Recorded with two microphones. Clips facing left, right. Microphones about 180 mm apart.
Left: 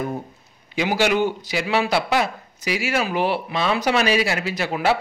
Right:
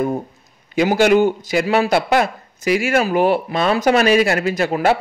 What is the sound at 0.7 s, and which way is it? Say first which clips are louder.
Speech: right 6 dB; 50° right (ahead or behind).